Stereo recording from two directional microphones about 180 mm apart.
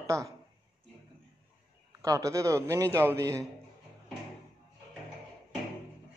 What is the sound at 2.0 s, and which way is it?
A woman's voice, 20° right (ahead or behind).